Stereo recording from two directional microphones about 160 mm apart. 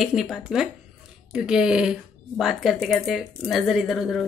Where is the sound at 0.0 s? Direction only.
Centre (ahead or behind).